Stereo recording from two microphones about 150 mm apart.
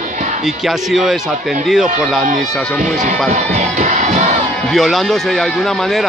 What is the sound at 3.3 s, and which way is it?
Crowd, 50° right (ahead or behind).